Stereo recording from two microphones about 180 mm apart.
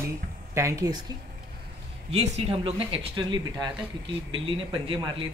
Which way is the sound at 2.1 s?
35° right (ahead or behind).